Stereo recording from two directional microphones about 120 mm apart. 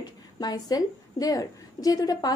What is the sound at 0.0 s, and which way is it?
A woman's voice, 35° left (ahead or behind).